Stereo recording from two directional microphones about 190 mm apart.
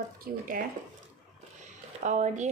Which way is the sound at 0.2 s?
45° right (ahead or behind).